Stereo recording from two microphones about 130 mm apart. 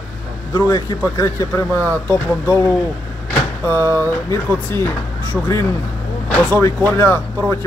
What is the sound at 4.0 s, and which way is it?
Speech, 20° left (ahead or behind).